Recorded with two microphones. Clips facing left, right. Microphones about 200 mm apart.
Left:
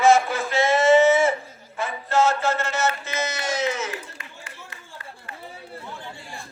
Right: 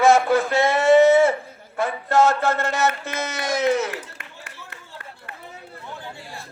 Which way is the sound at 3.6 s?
60° right (ahead or behind).